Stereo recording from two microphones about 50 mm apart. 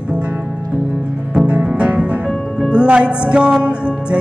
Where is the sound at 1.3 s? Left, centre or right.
Right.